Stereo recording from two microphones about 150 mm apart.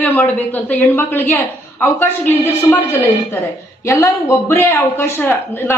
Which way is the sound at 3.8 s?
20° left (ahead or behind).